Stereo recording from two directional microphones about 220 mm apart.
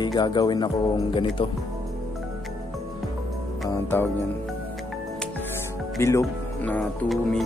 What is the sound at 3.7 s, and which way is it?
Speech, 10° left (ahead or behind).